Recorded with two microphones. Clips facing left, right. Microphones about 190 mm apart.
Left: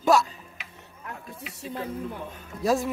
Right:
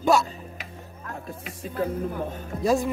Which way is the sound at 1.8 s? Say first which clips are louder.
Right 8 dB; 45° right (ahead or behind).